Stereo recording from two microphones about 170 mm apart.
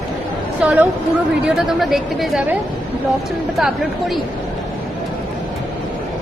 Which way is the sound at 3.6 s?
Centre (ahead or behind).